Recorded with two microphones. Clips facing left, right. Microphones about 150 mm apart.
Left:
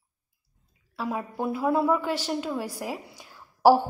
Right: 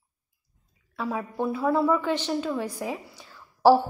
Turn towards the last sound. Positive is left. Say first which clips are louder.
# even
turn(degrees=15)  # may be behind; listen again after turning